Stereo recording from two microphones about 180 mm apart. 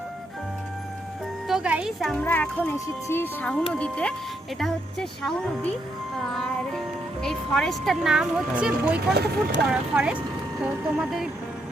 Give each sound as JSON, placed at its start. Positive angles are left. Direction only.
{"t": 1.5, "sound": "speech", "side_deg": -5}
{"t": 7.2, "sound": "speech", "side_deg": 5}
{"t": 9.1, "sound": "speech", "side_deg": -65}
{"t": 9.9, "sound": "speech", "side_deg": -5}